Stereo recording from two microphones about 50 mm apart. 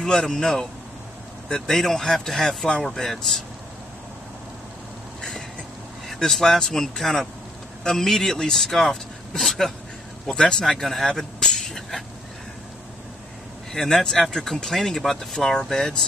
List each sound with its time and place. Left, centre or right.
0.0 s speech: centre
6.0 s speech: centre
13.7 s speech: centre